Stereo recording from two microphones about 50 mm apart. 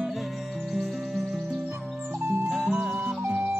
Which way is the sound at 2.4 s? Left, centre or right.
Centre.